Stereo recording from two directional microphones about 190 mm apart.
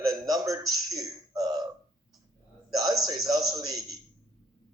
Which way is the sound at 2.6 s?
20° right (ahead or behind).